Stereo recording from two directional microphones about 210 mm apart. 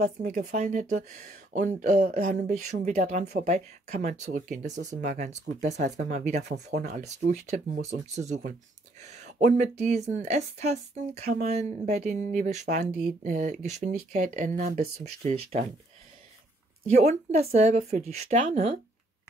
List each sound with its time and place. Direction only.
0.0 s speech: 40° right (ahead or behind)
16.9 s speech: 35° right (ahead or behind)